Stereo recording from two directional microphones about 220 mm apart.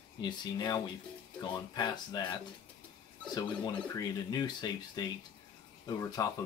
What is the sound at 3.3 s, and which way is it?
Speech, 20° left (ahead or behind).